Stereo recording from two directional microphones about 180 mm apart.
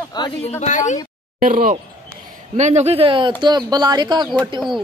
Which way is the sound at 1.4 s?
50° right (ahead or behind).